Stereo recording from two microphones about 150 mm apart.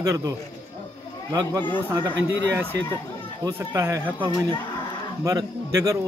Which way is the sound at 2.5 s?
15° right (ahead or behind).